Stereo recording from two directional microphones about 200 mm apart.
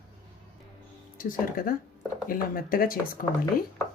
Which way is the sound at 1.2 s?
45° left (ahead or behind).